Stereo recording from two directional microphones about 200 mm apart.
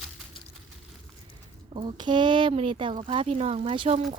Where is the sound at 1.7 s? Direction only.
20° right (ahead or behind).